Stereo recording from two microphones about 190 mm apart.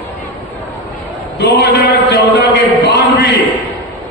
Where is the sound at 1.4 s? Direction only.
65° left (ahead or behind).